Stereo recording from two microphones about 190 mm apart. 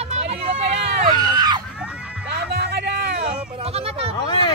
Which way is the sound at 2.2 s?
60° right (ahead or behind).